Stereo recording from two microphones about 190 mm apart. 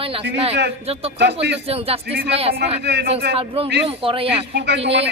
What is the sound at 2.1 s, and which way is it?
Speech, 65° right (ahead or behind).